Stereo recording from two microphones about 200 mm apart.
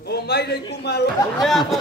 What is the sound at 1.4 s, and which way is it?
Speech, centre (ahead or behind).